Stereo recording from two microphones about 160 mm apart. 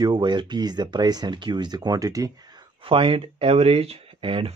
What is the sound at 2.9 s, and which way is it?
Speech, 35° right (ahead or behind).